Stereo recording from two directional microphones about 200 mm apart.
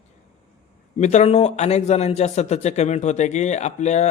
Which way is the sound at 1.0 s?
35° left (ahead or behind).